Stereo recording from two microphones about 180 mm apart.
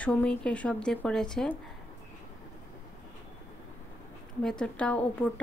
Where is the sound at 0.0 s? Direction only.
5° left (ahead or behind).